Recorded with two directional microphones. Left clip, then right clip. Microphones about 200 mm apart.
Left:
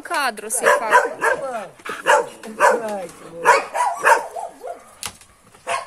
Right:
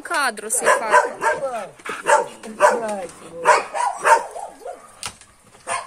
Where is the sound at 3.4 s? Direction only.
35° left (ahead or behind).